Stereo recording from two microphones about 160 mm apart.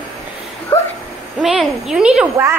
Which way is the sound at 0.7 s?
15° left (ahead or behind).